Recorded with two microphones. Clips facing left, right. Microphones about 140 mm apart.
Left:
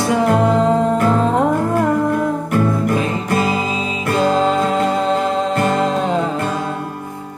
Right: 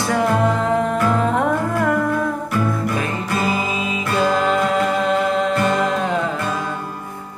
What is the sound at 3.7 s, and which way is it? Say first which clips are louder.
Music: left 2 dB; 25° left (ahead or behind).